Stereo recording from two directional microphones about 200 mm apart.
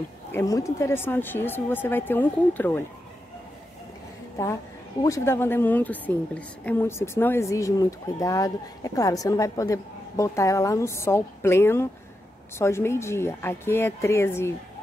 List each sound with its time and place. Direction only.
0.3 s a woman's voice: 15° left (ahead or behind)
5.0 s a woman's voice: 15° left (ahead or behind)